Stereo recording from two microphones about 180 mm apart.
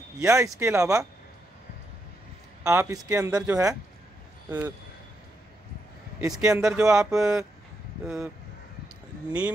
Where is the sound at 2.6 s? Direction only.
15° right (ahead or behind).